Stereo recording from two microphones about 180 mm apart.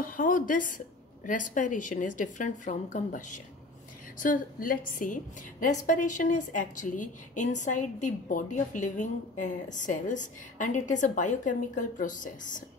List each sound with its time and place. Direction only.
0.0 s a woman's voice: 50° left (ahead or behind)